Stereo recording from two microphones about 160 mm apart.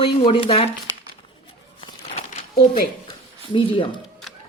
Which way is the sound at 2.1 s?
45° left (ahead or behind).